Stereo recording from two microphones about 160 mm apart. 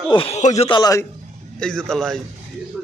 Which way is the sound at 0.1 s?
35° left (ahead or behind).